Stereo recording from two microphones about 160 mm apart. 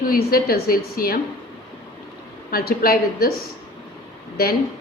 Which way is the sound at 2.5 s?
65° left (ahead or behind).